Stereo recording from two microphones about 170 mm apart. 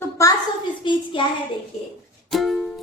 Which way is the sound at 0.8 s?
30° left (ahead or behind).